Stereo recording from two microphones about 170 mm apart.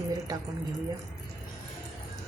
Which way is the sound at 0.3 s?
20° right (ahead or behind).